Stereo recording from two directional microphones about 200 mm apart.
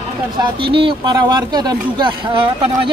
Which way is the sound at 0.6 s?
25° right (ahead or behind).